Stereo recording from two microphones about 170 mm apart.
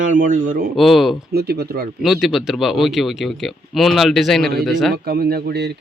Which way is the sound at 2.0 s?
Centre (ahead or behind).